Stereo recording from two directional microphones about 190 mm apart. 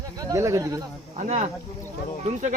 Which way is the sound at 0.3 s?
15° right (ahead or behind).